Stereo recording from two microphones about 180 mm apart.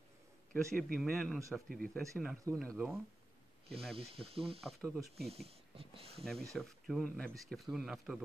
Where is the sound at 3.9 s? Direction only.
30° right (ahead or behind).